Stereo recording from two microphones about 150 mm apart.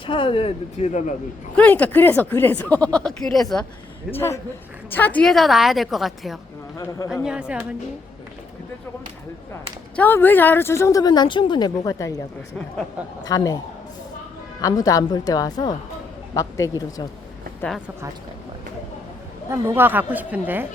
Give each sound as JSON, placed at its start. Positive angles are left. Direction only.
{"t": 0.0, "sound": "speech", "side_deg": 35}
{"t": 1.5, "sound": "speech", "side_deg": 10}
{"t": 4.1, "sound": "a woman's voice", "side_deg": 15}
{"t": 6.7, "sound": "speech", "side_deg": 25}
{"t": 7.1, "sound": "a woman's voice", "side_deg": -5}
{"t": 9.9, "sound": "speech", "side_deg": 15}
{"t": 13.2, "sound": "speech", "side_deg": 25}
{"t": 14.6, "sound": "speech", "side_deg": 25}
{"t": 19.5, "sound": "a woman's voice", "side_deg": -15}